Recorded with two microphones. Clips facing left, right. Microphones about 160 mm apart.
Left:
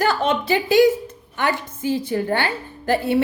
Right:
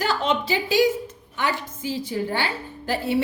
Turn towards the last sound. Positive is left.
turn(degrees=55)  # may be behind; listen again after turning